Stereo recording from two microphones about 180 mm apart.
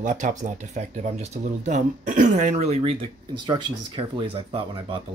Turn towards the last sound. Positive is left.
turn(degrees=-30)  # may be behind; listen again after turning